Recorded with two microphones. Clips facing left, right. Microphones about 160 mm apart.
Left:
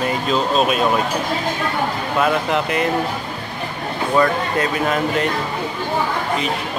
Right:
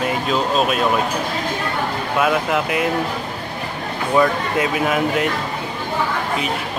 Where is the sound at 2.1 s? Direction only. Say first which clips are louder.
Even; 5° right (ahead or behind).